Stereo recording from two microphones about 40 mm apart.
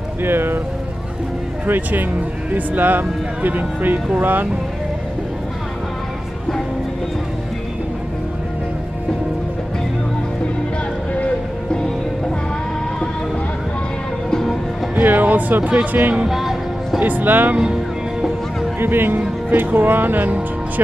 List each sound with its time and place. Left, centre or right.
0.2 s speech: right
1.7 s speech: right
15.0 s speech: right
16.3 s music: centre
17.0 s speech: right
18.8 s speech: right